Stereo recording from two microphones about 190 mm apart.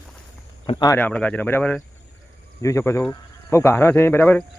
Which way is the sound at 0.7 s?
25° left (ahead or behind).